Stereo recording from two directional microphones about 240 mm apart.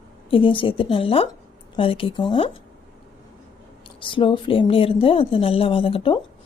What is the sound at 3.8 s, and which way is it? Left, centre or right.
Speech, left.